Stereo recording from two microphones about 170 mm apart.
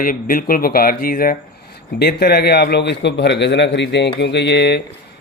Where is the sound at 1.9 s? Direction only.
70° left (ahead or behind); by 4.8 s 90° left.